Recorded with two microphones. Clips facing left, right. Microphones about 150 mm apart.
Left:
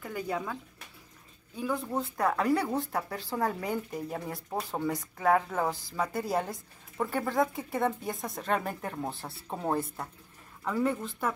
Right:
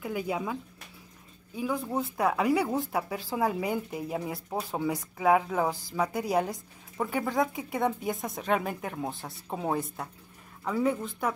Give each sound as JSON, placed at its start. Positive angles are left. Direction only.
{"t": 0.0, "sound": "speech", "side_deg": -10}
{"t": 1.6, "sound": "speech", "side_deg": -5}